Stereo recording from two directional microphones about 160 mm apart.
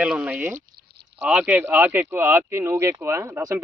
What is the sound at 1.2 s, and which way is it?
Speech, 5° right (ahead or behind).